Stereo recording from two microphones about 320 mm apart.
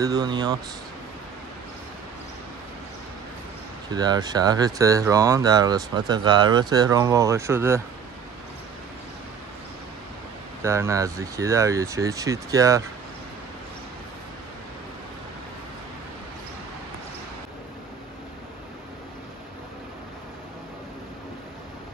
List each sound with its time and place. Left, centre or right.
0.0 s speech: centre
3.9 s speech: centre
10.6 s speech: centre